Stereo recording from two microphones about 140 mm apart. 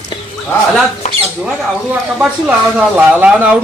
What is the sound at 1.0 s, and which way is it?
Rodents, 55° left (ahead or behind).